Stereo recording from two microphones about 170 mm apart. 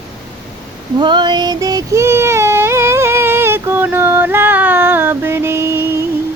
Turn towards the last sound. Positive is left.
turn(degrees=-15)  # may be behind; listen again after turning